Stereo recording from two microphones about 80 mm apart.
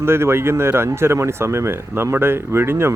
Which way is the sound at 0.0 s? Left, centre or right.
Right.